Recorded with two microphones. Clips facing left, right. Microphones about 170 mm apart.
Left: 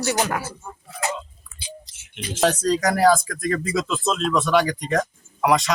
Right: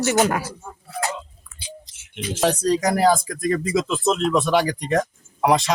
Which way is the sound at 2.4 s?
15° right (ahead or behind).